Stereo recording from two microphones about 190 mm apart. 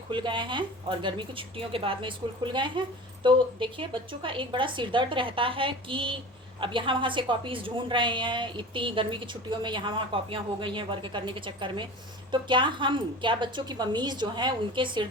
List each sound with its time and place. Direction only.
0.1 s a woman's voice: 25° right (ahead or behind)